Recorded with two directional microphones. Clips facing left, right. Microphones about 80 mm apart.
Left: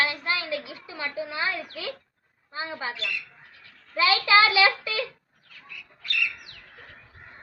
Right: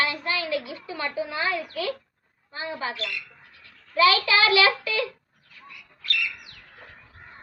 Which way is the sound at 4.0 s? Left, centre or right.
Left.